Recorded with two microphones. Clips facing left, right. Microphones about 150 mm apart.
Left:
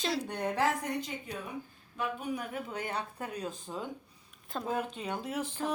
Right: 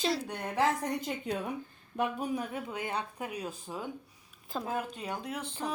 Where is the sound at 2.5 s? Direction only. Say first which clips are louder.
Right 1 dB; 15° right (ahead or behind).